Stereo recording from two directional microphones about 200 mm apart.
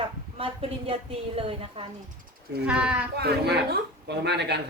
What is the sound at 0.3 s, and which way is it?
Speech, 30° right (ahead or behind).